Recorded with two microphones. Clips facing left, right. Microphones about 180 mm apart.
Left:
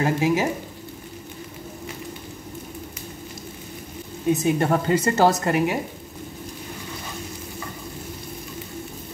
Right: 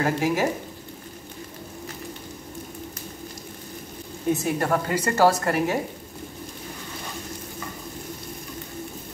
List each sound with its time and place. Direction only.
0.0 s a woman's voice: 20° left (ahead or behind)
4.3 s a woman's voice: 20° left (ahead or behind)